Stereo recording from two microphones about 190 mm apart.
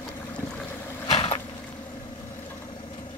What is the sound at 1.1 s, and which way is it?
Vehicle, 30° left (ahead or behind).